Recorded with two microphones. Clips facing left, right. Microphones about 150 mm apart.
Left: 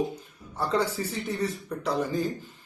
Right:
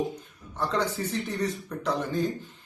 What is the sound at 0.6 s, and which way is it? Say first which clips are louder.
A man's voice: left 1 dB; 10° left (ahead or behind).